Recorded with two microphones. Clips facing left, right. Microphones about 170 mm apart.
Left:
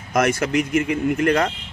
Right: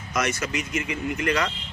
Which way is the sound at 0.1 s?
55° left (ahead or behind).